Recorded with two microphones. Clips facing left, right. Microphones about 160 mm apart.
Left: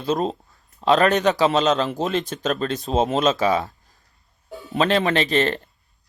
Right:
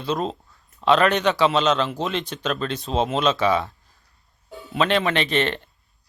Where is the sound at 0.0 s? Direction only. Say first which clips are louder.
Left 3 dB; 45° left (ahead or behind).